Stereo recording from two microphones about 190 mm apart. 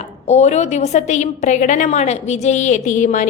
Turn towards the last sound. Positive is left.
turn(degrees=40)  # may be behind; listen again after turning